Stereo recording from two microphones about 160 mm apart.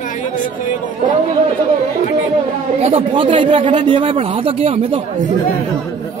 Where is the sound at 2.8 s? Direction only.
35° right (ahead or behind).